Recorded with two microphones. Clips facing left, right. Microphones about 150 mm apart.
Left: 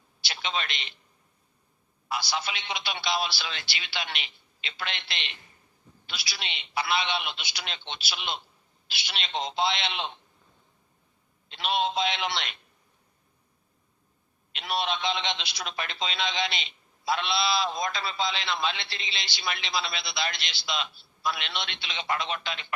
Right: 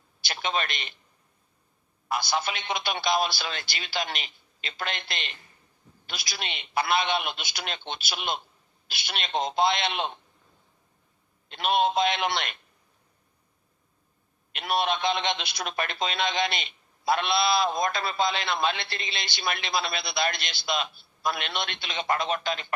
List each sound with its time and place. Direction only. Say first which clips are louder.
0.2 s a man's voice: right 3 dB; 50° right (ahead or behind)
2.0 s a man's voice: right 3 dB; 50° right (ahead or behind)
11.4 s a man's voice: right 4 dB; 50° right (ahead or behind)
14.5 s a man's voice: right 3 dB; 55° right (ahead or behind)